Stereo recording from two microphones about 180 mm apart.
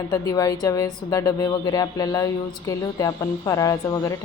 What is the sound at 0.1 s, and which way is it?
A woman's voice, 20° left (ahead or behind).